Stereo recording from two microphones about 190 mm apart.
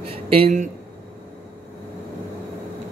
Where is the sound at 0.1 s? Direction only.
35° right (ahead or behind).